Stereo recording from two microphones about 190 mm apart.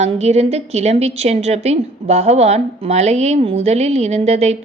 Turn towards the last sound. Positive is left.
turn(degrees=-35)  # may be behind; listen again after turning